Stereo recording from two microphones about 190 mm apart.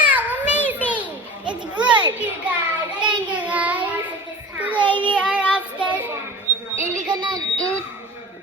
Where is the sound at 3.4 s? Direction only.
5° right (ahead or behind).